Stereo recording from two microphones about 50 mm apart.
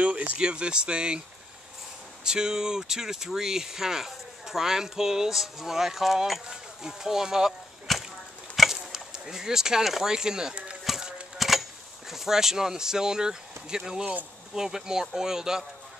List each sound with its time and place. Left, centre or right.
0.3 s speech: centre
2.2 s speech: centre
7.9 s a sound: centre
8.9 s speech: centre
10.8 s clip-clop: centre
11.3 s a sound: centre
12.1 s speech: centre